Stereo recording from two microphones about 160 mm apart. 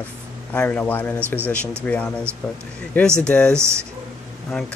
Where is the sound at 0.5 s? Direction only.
10° left (ahead or behind).